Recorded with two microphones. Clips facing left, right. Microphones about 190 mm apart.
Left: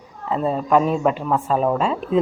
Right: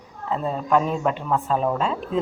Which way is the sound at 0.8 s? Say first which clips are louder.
Left 4 dB; 5° left (ahead or behind).